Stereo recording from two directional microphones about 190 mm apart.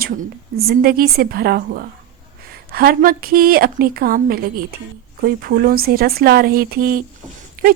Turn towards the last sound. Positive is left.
turn(degrees=-50)  # may be behind; listen again after turning